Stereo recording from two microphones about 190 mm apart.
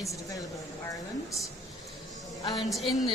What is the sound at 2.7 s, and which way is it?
Speech, centre (ahead or behind).